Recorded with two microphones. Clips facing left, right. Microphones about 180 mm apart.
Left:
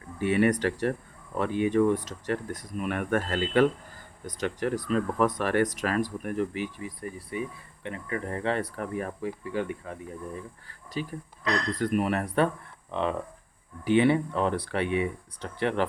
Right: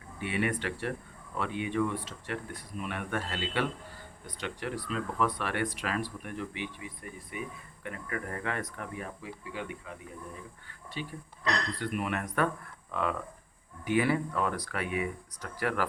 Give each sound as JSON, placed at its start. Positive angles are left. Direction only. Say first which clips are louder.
{"t": 0.2, "sound": "speech", "louder": "left 8 dB", "side_deg": 40}
{"t": 11.0, "sound": "speech", "louder": "left 6 dB", "side_deg": 40}